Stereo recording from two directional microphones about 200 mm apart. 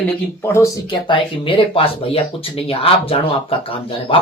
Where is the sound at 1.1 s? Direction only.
25° left (ahead or behind).